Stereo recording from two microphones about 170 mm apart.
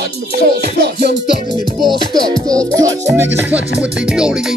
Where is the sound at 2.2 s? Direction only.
25° right (ahead or behind).